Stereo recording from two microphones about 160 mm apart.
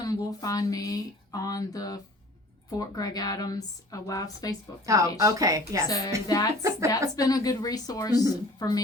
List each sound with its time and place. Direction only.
0.0 s speech: 20° left (ahead or behind)
4.9 s a woman's voice: 20° right (ahead or behind)
6.2 s speech: 20° left (ahead or behind)
6.6 s speech: 20° right (ahead or behind)
7.2 s a woman's voice: 25° left (ahead or behind)